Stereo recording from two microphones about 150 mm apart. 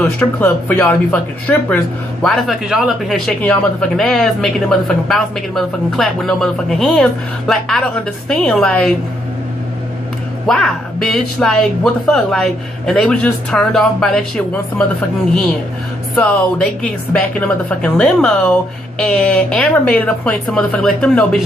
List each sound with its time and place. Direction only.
0.0 s speech: 10° left (ahead or behind)
10.4 s speech: 5° left (ahead or behind)